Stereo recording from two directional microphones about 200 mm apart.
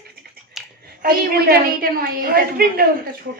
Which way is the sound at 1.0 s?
50° right (ahead or behind).